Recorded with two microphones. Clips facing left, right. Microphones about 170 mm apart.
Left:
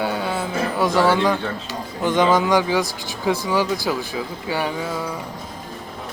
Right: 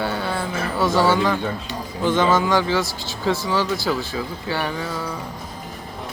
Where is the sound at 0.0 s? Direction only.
15° left (ahead or behind).